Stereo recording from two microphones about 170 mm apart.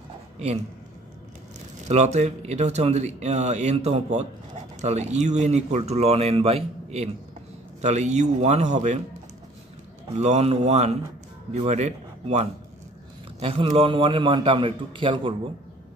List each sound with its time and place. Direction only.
1.9 s speech: 40° right (ahead or behind)
10.1 s a man's voice: 40° right (ahead or behind)